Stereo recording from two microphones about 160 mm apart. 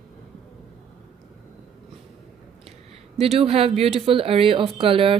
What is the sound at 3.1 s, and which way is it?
Speech, 40° right (ahead or behind).